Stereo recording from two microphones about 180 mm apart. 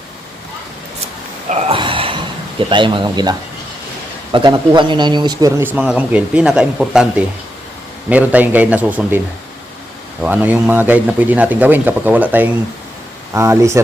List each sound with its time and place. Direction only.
1.5 s snort: 35° right (ahead or behind)
2.6 s a man's voice: 25° right (ahead or behind); by 7.1 s 5° right (ahead or behind)
8.1 s a man's voice: 10° right (ahead or behind)
10.2 s a man's voice: 10° right (ahead or behind)